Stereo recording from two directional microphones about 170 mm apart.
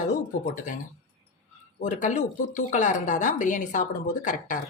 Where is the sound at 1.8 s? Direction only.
45° left (ahead or behind).